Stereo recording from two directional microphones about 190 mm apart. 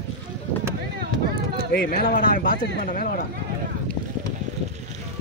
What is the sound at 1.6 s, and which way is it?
A man's voice, 50° left (ahead or behind).